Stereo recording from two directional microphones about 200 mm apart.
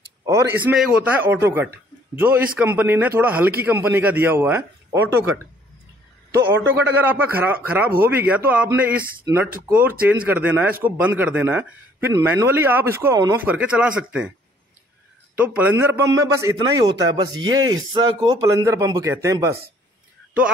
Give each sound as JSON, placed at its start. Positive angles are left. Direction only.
{"t": 0.2, "sound": "a man's voice", "side_deg": -15}
{"t": 6.3, "sound": "speech", "side_deg": -10}
{"t": 15.3, "sound": "speech", "side_deg": -10}